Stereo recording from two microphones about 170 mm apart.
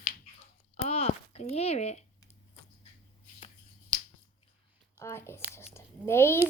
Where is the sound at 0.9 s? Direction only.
35° left (ahead or behind).